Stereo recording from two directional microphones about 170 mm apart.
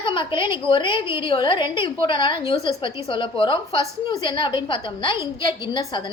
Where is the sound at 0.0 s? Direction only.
30° left (ahead or behind).